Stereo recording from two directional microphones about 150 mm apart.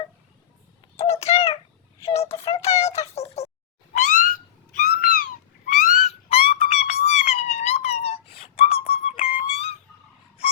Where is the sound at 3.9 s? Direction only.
60° left (ahead or behind).